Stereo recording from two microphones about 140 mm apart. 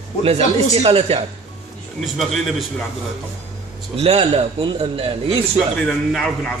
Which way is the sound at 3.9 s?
45° right (ahead or behind).